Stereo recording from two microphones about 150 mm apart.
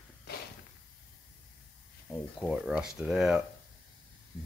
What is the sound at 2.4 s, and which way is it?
Speech, 5° right (ahead or behind).